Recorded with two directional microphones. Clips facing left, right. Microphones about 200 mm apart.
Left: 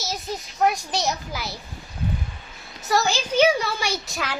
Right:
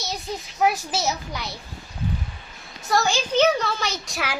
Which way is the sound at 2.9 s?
5° left (ahead or behind).